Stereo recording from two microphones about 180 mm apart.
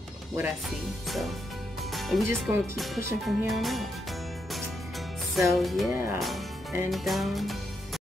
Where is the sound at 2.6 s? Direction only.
Centre (ahead or behind).